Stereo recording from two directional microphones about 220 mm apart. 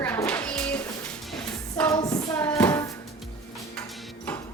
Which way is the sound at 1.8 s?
15° left (ahead or behind).